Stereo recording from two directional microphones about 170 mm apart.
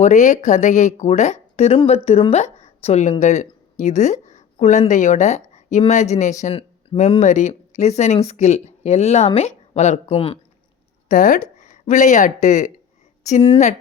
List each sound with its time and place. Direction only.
0.0 s speech: 45° left (ahead or behind)
11.1 s speech: 50° left (ahead or behind)